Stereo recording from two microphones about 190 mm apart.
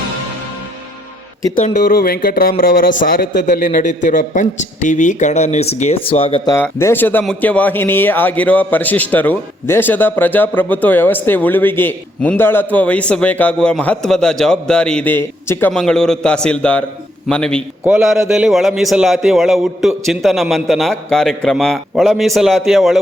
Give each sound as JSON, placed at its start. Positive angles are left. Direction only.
{"t": 1.5, "sound": "speech", "side_deg": 40}
{"t": 6.5, "sound": "a man's voice", "side_deg": 15}